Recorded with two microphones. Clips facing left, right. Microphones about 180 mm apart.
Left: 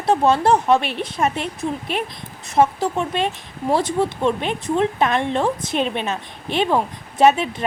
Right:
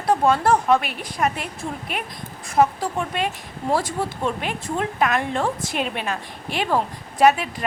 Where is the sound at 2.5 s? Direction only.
25° left (ahead or behind).